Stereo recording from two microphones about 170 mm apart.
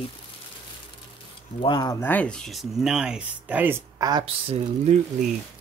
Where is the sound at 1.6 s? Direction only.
25° left (ahead or behind).